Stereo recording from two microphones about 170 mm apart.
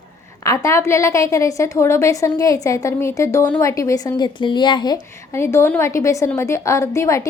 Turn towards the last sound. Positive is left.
turn(degrees=15)  # may be behind; listen again after turning